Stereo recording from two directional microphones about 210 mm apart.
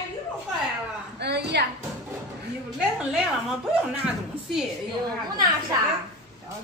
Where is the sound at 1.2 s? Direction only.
55° right (ahead or behind).